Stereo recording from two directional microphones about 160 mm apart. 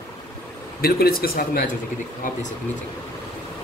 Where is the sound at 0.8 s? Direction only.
75° left (ahead or behind).